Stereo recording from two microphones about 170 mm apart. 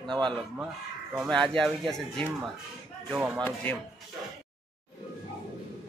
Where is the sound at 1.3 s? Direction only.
5° left (ahead or behind).